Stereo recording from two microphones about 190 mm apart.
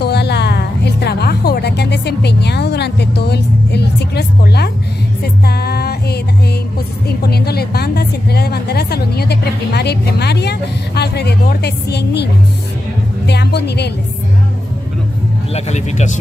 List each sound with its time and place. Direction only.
0.0 s music: 60° left (ahead or behind)
13.3 s a woman's voice: 60° left (ahead or behind)
15.5 s speech: 35° left (ahead or behind)